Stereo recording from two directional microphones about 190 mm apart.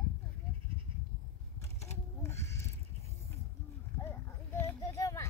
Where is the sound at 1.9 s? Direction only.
15° left (ahead or behind).